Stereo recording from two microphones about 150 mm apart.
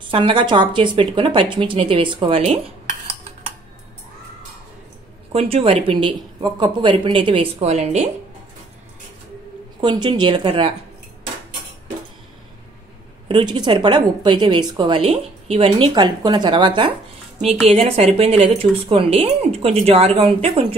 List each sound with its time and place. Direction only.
0.0 s a woman's voice: 35° right (ahead or behind)
5.3 s a woman's voice: 40° right (ahead or behind)
7.7 s speech: 50° right (ahead or behind)
9.8 s a woman's voice: 30° right (ahead or behind)
13.3 s a woman's voice: 30° right (ahead or behind)
17.4 s a woman's voice: 40° right (ahead or behind)